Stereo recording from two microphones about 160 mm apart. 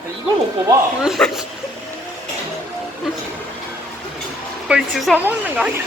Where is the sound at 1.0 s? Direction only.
Centre (ahead or behind).